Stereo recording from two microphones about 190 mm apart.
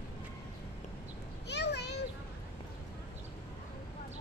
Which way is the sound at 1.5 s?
60° left (ahead or behind).